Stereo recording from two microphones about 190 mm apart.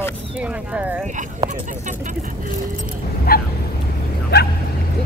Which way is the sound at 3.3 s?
50° left (ahead or behind).